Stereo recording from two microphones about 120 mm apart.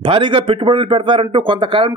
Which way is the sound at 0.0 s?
45° right (ahead or behind).